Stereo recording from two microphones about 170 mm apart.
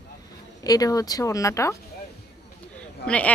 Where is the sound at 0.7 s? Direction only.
20° left (ahead or behind).